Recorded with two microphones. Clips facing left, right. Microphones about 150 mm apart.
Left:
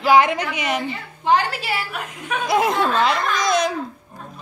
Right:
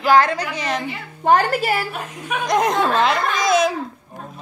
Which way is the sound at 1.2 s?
45° right (ahead or behind).